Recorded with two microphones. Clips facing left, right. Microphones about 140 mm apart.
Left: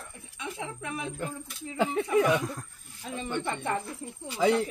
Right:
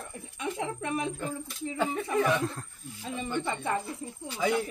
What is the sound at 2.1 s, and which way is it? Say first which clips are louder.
Mantra: left 2 dB; 10° left (ahead or behind).